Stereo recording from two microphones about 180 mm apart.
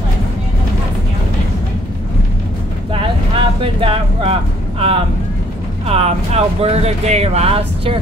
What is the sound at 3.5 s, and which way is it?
Speech, 30° right (ahead or behind).